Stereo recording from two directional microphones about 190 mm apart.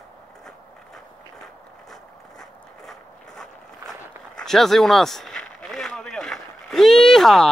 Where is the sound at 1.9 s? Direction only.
Centre (ahead or behind).